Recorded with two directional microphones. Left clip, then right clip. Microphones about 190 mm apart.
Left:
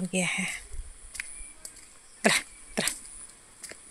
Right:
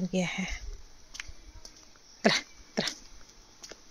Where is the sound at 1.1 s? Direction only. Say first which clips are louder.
Left 4 dB; 5° left (ahead or behind).